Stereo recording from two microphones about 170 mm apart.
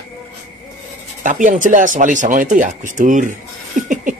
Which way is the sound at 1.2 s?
45° right (ahead or behind).